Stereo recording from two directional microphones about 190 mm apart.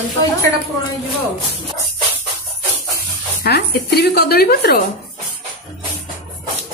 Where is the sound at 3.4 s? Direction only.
60° left (ahead or behind).